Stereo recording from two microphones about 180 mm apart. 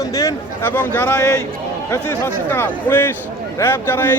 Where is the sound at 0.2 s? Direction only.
15° left (ahead or behind).